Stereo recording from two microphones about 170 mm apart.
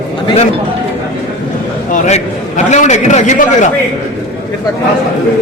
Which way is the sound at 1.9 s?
40° left (ahead or behind).